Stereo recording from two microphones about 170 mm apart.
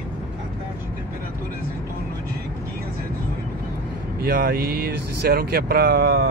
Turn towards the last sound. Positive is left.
turn(degrees=-65)  # may be behind; listen again after turning